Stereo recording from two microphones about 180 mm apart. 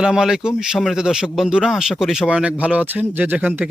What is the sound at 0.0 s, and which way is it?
Speech, 5° right (ahead or behind).